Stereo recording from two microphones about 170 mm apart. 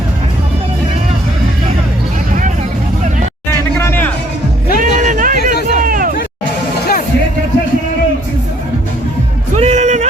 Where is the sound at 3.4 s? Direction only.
15° left (ahead or behind).